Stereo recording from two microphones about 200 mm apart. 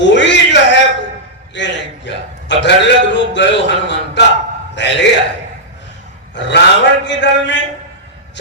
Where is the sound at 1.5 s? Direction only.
65° left (ahead or behind).